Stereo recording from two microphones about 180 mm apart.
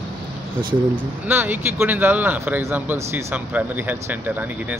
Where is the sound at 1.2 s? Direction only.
10° right (ahead or behind).